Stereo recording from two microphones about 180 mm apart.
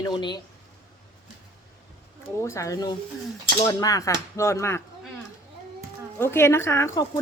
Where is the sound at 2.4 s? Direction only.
15° left (ahead or behind).